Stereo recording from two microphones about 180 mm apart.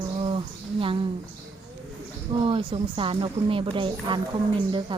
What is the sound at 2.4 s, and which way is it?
Speech, 30° right (ahead or behind).